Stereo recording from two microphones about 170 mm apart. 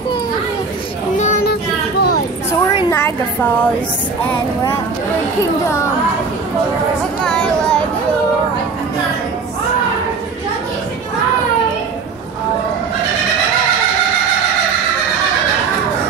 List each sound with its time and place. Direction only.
1.1 s a sound: 45° left (ahead or behind)
1.4 s child singing: 70° left (ahead or behind)
5.6 s speech: 15° left (ahead or behind)
7.2 s speech: 5° left (ahead or behind)